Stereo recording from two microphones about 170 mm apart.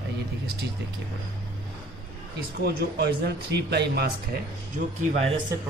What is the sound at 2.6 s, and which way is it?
A man's voice, 70° right (ahead or behind).